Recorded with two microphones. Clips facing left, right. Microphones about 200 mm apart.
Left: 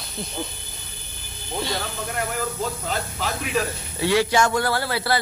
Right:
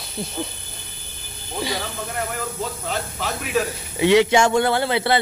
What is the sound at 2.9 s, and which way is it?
Speech, centre (ahead or behind).